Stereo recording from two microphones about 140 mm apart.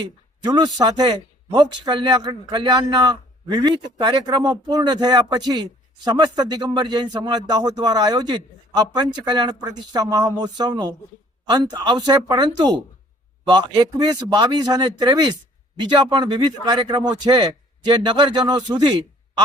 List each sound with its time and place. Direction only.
0.0 s a man's voice: 30° right (ahead or behind)